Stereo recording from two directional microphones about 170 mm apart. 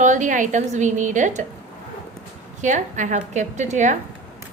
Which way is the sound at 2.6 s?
45° right (ahead or behind).